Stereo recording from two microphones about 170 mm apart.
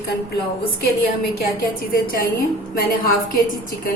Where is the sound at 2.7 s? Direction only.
60° left (ahead or behind).